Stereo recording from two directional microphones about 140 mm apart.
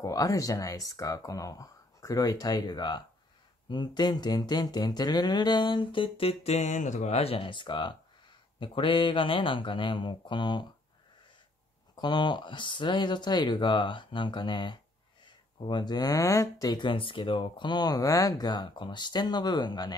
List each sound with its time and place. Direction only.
0.0 s speech: 25° left (ahead or behind)
11.9 s speech: 30° left (ahead or behind)